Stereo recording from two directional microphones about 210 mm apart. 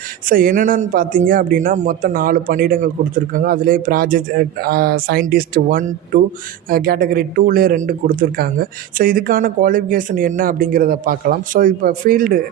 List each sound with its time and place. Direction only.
0.3 s speech: 40° right (ahead or behind)